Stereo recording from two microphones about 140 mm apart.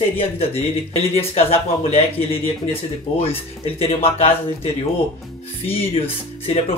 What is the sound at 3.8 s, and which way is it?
Speech, 45° left (ahead or behind).